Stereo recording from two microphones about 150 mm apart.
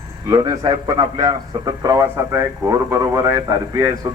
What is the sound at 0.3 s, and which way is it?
A man's voice, 25° right (ahead or behind).